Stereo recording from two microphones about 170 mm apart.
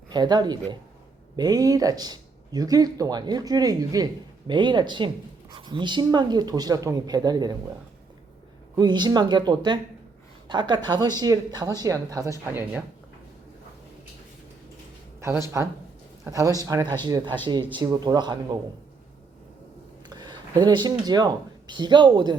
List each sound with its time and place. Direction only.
0.1 s speech: 25° right (ahead or behind)
8.7 s speech: 25° right (ahead or behind)
15.6 s speech: 15° right (ahead or behind)
20.1 s speech: 25° right (ahead or behind)